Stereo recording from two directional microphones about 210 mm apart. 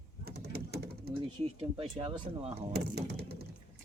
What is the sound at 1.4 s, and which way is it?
Speech, 25° right (ahead or behind).